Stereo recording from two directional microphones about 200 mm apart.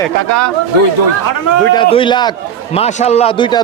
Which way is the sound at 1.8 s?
25° left (ahead or behind).